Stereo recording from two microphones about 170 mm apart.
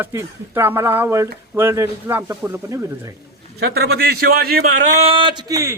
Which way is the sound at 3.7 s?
70° right (ahead or behind).